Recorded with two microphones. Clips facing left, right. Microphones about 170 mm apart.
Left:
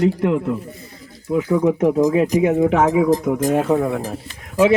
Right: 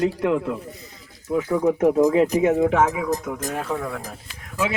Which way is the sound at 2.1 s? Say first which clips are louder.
Left 1 dB; 25° right (ahead or behind).